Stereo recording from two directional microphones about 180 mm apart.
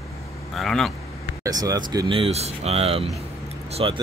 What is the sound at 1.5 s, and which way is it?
Speech, 20° right (ahead or behind).